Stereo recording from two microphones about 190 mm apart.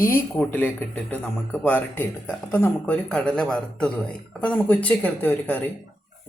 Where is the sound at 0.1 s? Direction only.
10° left (ahead or behind).